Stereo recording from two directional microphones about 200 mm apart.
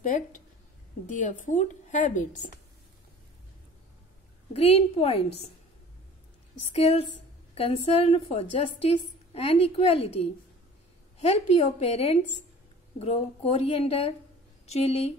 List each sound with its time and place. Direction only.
0.0 s a woman's voice: 40° left (ahead or behind)
4.6 s a woman's voice: 30° left (ahead or behind)
6.6 s a woman's voice: 30° left (ahead or behind)